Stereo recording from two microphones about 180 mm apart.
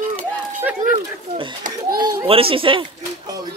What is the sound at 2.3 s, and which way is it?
Speech, 30° right (ahead or behind).